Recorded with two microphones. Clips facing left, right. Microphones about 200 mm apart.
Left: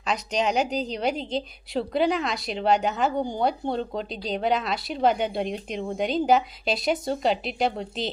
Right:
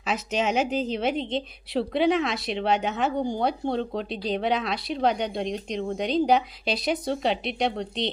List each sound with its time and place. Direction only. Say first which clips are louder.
0.0 s a woman's voice: left 1 dB; 5° right (ahead or behind)